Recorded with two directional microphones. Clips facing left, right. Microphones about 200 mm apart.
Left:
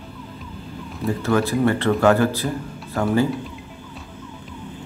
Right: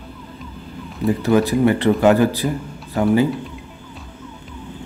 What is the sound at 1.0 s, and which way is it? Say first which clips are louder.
Speech: right 4 dB; 15° right (ahead or behind).